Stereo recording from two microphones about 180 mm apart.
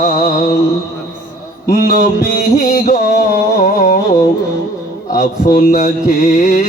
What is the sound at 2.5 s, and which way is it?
Music, 45° left (ahead or behind).